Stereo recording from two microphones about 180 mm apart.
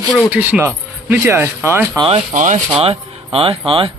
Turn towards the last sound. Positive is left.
turn(degrees=-30)  # may be behind; listen again after turning